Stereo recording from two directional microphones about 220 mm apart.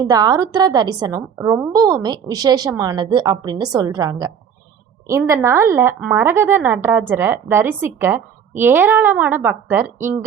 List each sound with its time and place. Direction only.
0.0 s speech: 15° right (ahead or behind)